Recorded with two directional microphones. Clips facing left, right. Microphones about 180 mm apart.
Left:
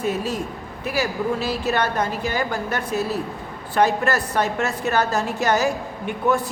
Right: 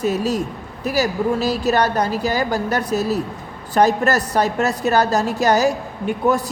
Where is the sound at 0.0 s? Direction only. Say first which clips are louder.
Right 4 dB; 40° right (ahead or behind).